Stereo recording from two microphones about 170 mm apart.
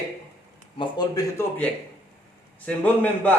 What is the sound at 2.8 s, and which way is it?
Speech, 10° left (ahead or behind).